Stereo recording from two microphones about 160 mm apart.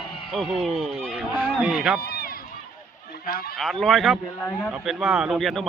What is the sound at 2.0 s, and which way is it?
Run, 80° left.